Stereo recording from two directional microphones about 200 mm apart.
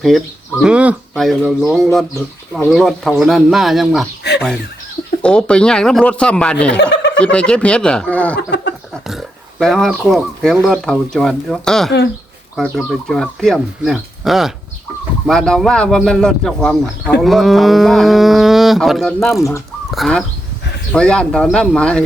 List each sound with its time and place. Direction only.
0.6 s a man's voice: 5° right (ahead or behind)
5.2 s a man's voice: 5° left (ahead or behind)
8.4 s speech: 60° left (ahead or behind)
9.0 s a man's voice: centre (ahead or behind)